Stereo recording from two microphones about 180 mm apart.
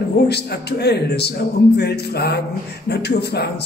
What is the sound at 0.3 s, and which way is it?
A man's voice, 65° left (ahead or behind).